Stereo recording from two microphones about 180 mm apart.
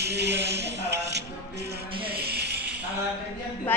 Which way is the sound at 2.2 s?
65° right (ahead or behind).